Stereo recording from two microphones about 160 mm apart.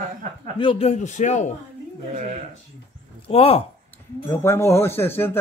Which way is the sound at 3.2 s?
40° left (ahead or behind).